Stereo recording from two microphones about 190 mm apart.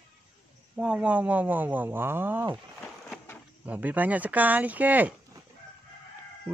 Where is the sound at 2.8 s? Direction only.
10° left (ahead or behind).